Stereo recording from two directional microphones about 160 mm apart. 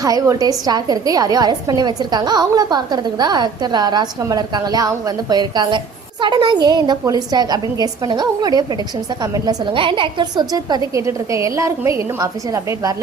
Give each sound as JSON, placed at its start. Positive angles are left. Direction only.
{"t": 0.0, "sound": "a woman's voice", "side_deg": -20}